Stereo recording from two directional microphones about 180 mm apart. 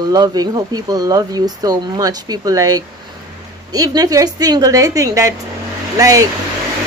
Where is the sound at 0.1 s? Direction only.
20° right (ahead or behind).